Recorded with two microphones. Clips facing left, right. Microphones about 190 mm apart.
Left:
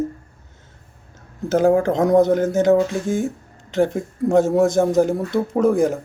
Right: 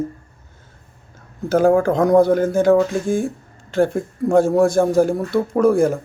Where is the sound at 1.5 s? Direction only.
20° left (ahead or behind).